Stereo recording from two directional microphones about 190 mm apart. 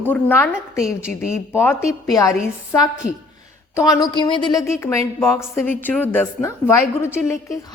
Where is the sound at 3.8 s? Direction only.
25° left (ahead or behind).